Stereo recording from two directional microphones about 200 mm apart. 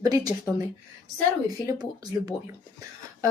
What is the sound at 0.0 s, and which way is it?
Speech, 20° right (ahead or behind).